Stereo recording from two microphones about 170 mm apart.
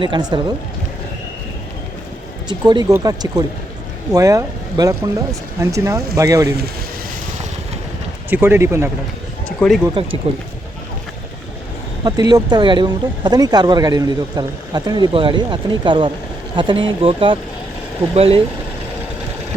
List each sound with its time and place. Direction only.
0.0 s speech: 25° right (ahead or behind)
2.5 s speech: 25° right (ahead or behind)
8.3 s speech: 10° right (ahead or behind)
9.6 s speech: centre (ahead or behind)
10.3 s speech: 35° right (ahead or behind)
12.0 s speech: 25° right (ahead or behind)